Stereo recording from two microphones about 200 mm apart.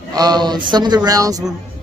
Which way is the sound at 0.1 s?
20° right (ahead or behind).